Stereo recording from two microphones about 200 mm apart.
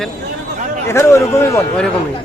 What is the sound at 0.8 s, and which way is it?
A man's voice, 15° left (ahead or behind).